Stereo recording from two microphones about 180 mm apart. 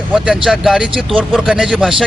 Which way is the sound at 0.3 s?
Centre (ahead or behind).